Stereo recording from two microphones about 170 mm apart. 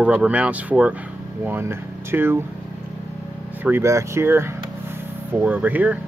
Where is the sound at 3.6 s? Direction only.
15° right (ahead or behind).